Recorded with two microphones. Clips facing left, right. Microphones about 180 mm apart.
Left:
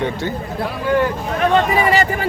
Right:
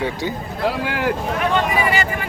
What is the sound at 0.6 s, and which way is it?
Speech, 90° right.